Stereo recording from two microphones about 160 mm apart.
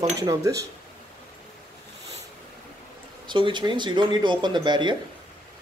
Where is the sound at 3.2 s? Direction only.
30° right (ahead or behind).